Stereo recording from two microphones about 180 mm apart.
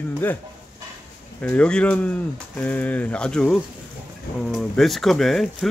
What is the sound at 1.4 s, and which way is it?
Speech, 5° left (ahead or behind).